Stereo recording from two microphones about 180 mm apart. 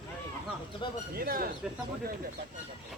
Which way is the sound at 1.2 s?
55° right (ahead or behind).